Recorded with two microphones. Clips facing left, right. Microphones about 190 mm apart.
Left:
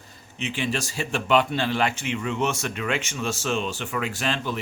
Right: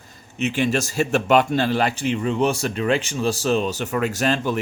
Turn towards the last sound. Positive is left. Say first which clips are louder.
# right 6 dB
turn(degrees=-45)  # may be behind; listen again after turning